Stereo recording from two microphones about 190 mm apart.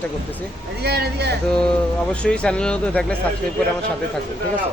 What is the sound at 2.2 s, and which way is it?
Speech, 5° left (ahead or behind).